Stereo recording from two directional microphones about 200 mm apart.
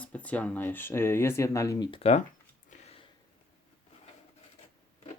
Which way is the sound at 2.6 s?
30° left (ahead or behind).